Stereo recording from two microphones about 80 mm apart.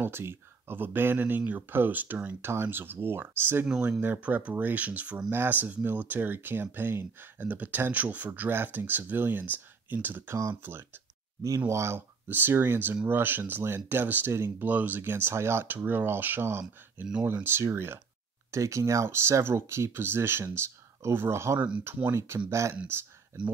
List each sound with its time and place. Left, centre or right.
0.0 s speech: right
11.4 s speech: right